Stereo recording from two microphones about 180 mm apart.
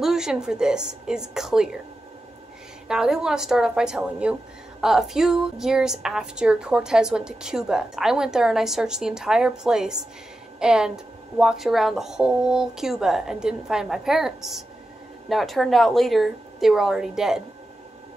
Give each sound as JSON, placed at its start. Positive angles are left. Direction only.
{"t": 0.0, "sound": "a woman's voice", "side_deg": 0}
{"t": 2.9, "sound": "a woman's voice", "side_deg": -5}